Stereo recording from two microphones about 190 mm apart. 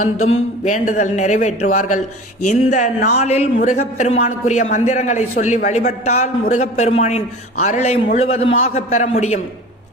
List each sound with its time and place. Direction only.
0.0 s a man's voice: 35° left (ahead or behind)